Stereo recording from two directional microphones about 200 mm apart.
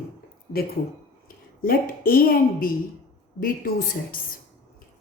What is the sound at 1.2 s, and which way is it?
A woman's voice, 45° left (ahead or behind).